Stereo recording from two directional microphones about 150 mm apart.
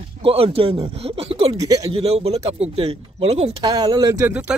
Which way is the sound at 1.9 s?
40° right (ahead or behind).